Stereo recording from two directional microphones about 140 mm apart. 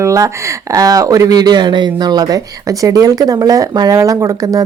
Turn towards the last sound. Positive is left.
turn(degrees=-25)  # may be behind; listen again after turning